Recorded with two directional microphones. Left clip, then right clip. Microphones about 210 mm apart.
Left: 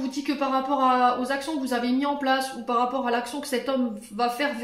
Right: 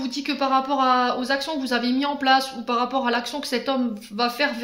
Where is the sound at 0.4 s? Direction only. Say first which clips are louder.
Right 3 dB; 45° right (ahead or behind).